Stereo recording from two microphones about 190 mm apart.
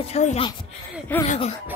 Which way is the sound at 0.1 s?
35° left (ahead or behind).